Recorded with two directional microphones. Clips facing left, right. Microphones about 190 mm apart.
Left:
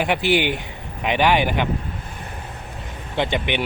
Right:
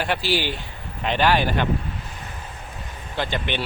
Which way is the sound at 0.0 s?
20° left (ahead or behind).